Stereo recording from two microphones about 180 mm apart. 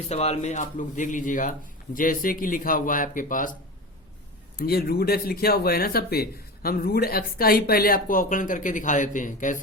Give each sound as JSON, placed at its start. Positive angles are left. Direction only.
{"t": 0.1, "sound": "speech", "side_deg": 35}
{"t": 4.5, "sound": "speech", "side_deg": 55}